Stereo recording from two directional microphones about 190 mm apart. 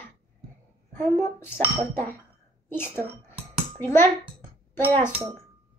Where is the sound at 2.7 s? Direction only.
10° left (ahead or behind).